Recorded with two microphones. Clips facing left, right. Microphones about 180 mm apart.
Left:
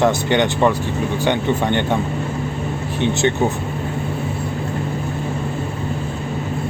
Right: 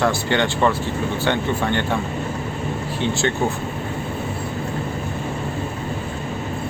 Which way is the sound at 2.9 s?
20° left (ahead or behind).